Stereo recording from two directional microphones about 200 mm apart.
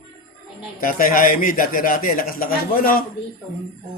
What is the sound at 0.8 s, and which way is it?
Speech, 45° left (ahead or behind).